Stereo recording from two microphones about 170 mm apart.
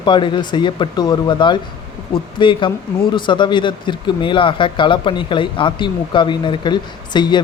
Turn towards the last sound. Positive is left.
turn(degrees=25)  # may be behind; listen again after turning